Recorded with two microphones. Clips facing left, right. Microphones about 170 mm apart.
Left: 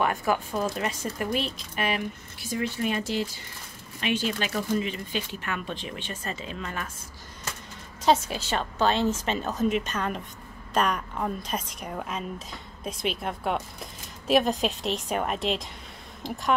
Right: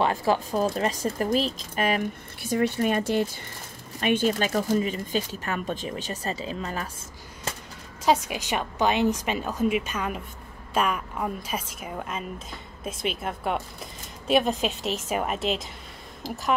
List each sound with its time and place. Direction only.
0.0 s speech: 30° right (ahead or behind)
8.0 s a woman's voice: 10° right (ahead or behind)